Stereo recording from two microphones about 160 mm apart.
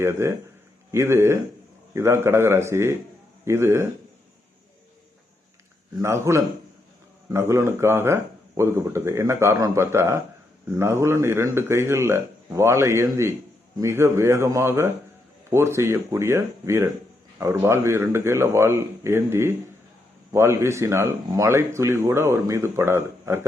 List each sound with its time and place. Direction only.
0.0 s speech: 15° right (ahead or behind)
6.0 s speech: 15° right (ahead or behind)